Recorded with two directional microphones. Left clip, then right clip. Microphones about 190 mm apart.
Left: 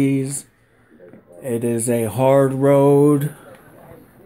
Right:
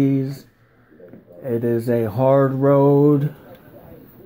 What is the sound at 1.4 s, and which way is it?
Speech, 30° left (ahead or behind).